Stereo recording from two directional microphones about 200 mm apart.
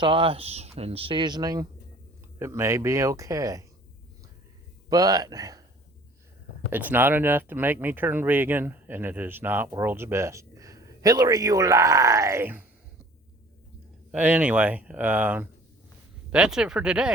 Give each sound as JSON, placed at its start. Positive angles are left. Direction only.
{"t": 0.0, "sound": "speech", "side_deg": -25}
{"t": 4.9, "sound": "speech", "side_deg": -20}
{"t": 6.7, "sound": "speech", "side_deg": -10}
{"t": 14.1, "sound": "speech", "side_deg": -5}